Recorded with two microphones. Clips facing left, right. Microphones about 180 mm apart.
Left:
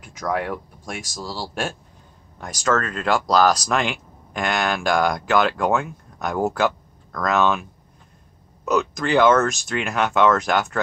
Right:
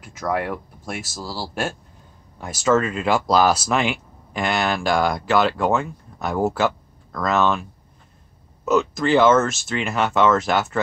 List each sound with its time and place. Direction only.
0.0 s speech: 5° right (ahead or behind)
8.6 s speech: centre (ahead or behind)